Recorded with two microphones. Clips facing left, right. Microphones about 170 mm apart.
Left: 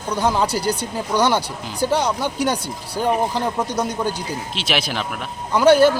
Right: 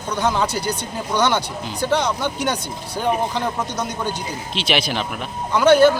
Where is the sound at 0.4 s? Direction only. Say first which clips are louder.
Left 2 dB; 35° left (ahead or behind).